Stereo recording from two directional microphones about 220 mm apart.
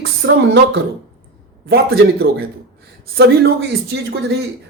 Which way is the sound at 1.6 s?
45° right (ahead or behind).